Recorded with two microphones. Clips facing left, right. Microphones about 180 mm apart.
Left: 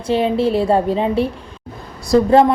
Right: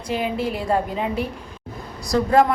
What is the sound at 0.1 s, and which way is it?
A woman's voice, 30° left (ahead or behind).